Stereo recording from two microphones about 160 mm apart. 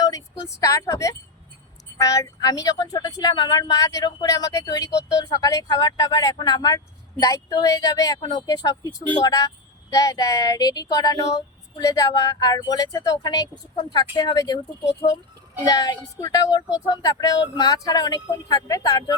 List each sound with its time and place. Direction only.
0.0 s speech: 20° left (ahead or behind)